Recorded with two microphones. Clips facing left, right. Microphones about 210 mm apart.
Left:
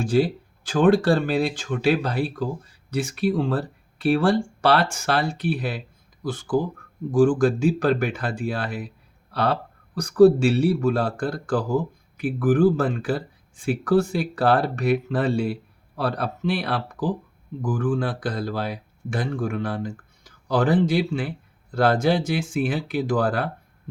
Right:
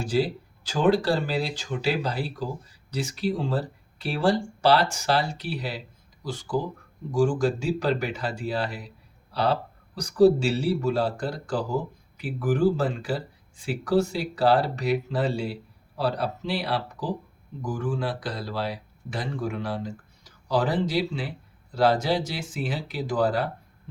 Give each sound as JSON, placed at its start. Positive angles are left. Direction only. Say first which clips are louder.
{"t": 0.0, "sound": "speech", "louder": "left 4 dB", "side_deg": 50}